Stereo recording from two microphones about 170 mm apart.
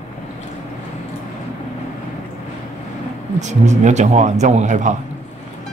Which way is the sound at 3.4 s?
45° right (ahead or behind).